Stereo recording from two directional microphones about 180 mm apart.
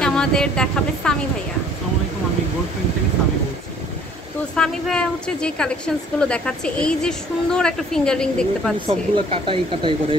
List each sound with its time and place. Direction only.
0.0 s a woman's voice: 5° left (ahead or behind)
4.6 s a woman's voice: 5° left (ahead or behind)
8.8 s speech: 30° right (ahead or behind)